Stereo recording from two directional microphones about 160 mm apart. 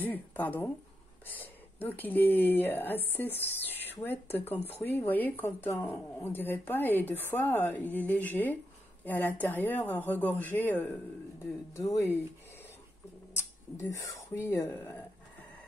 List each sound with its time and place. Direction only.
0.0 s a woman's voice: 10° left (ahead or behind)
13.3 s speech: 20° left (ahead or behind)